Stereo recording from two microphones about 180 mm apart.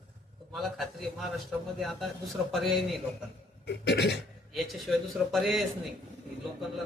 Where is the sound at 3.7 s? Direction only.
70° left (ahead or behind).